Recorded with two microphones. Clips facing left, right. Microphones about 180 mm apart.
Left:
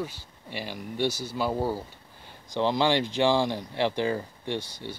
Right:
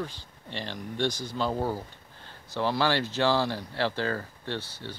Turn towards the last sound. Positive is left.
turn(degrees=15)  # may be behind; listen again after turning